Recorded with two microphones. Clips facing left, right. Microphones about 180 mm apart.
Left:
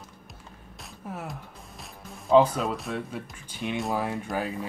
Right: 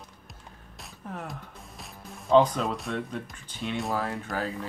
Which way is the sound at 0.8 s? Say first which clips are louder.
Left 1 dB; 5° left (ahead or behind).